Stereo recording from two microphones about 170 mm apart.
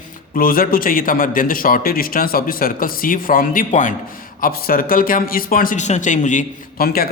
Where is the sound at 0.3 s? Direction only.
60° left (ahead or behind).